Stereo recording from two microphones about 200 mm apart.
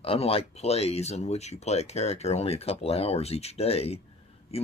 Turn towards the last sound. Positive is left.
turn(degrees=30)  # may be behind; listen again after turning